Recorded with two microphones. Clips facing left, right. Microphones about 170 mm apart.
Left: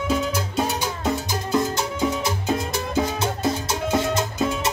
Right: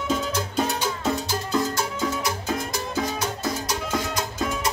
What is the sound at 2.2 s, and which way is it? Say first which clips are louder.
Music: left 3 dB; 25° left (ahead or behind).